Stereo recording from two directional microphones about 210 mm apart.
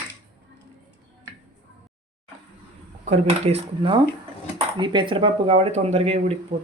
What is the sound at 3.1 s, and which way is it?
Speech, 30° right (ahead or behind).